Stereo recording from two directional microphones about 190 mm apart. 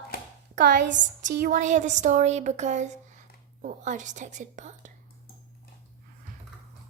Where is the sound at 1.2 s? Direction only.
45° right (ahead or behind).